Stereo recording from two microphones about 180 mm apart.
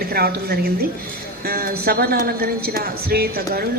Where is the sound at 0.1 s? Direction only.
60° right (ahead or behind).